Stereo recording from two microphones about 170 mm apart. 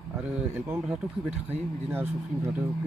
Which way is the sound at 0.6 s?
10° right (ahead or behind).